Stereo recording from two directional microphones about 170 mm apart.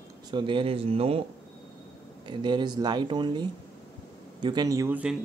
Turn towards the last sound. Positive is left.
turn(degrees=-20)  # may be behind; listen again after turning